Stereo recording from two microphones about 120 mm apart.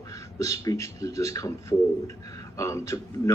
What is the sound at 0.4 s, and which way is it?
Speech, 25° left (ahead or behind).